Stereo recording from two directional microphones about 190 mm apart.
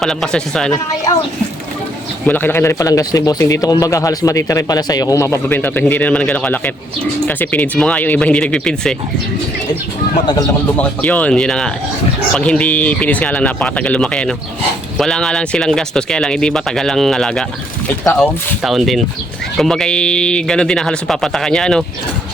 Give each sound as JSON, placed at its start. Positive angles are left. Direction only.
{"t": 0.0, "sound": "speech", "side_deg": 0}
{"t": 1.1, "sound": "speech", "side_deg": 20}
{"t": 10.2, "sound": "speech", "side_deg": 20}
{"t": 10.8, "sound": "speech", "side_deg": 5}
{"t": 17.8, "sound": "speech", "side_deg": 15}
{"t": 18.2, "sound": "speech", "side_deg": 0}